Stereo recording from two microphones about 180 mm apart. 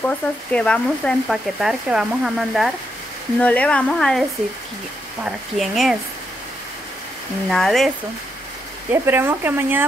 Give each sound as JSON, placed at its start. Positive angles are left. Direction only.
{"t": 0.0, "sound": "speech", "side_deg": 5}
{"t": 7.4, "sound": "speech", "side_deg": 0}
{"t": 8.9, "sound": "speech", "side_deg": -15}